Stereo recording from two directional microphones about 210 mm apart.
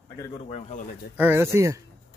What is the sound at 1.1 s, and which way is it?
Speech, 10° right (ahead or behind).